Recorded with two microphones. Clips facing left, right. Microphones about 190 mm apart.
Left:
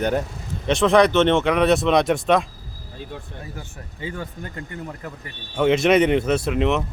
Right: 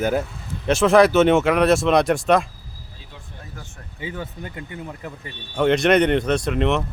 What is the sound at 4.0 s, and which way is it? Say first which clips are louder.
Speech: even; 10° right (ahead or behind).